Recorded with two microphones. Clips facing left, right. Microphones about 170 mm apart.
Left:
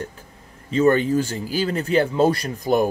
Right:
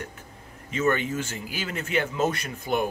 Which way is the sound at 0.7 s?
35° left (ahead or behind).